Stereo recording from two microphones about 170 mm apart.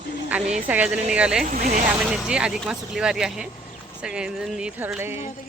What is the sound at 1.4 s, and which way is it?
Speech, 45° right (ahead or behind).